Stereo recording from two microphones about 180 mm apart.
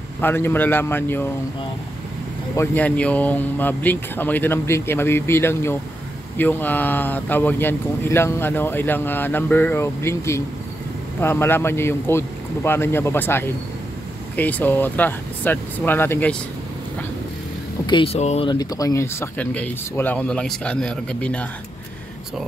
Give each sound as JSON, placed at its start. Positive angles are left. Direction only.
{"t": 0.2, "sound": "speech", "side_deg": 10}
{"t": 2.5, "sound": "speech", "side_deg": 10}
{"t": 17.8, "sound": "speech", "side_deg": 30}
{"t": 18.5, "sound": "speech", "side_deg": 20}